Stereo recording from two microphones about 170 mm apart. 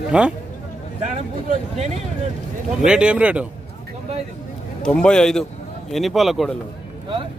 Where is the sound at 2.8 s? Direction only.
5° right (ahead or behind).